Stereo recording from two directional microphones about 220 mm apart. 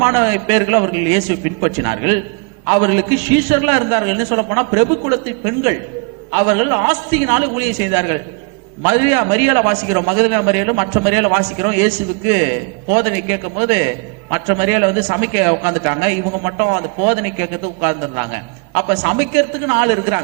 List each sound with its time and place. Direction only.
0.0 s a man's voice: 15° right (ahead or behind)
12.9 s a man's voice: 20° right (ahead or behind)